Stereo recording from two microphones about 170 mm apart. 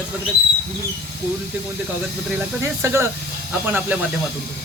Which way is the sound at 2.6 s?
15° right (ahead or behind).